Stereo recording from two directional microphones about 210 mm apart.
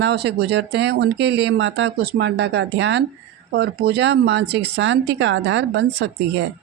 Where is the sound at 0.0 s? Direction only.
50° right (ahead or behind).